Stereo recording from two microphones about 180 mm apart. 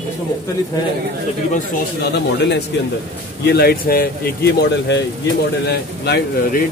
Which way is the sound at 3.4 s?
65° left (ahead or behind).